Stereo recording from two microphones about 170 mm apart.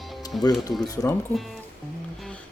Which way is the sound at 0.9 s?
20° left (ahead or behind).